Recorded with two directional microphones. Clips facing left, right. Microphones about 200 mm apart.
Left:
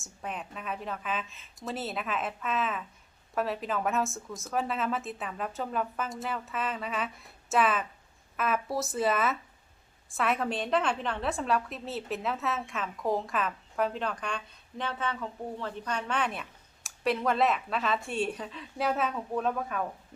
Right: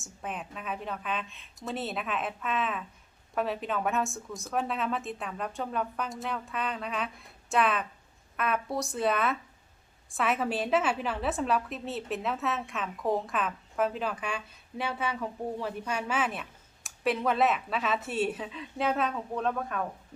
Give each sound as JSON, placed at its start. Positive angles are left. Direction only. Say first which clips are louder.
{"t": 0.0, "sound": "a woman's voice", "louder": "even", "side_deg": 0}